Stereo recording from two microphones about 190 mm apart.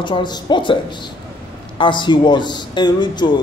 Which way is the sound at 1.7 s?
25° left (ahead or behind).